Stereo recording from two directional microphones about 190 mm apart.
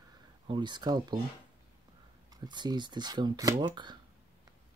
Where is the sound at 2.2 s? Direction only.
20° right (ahead or behind).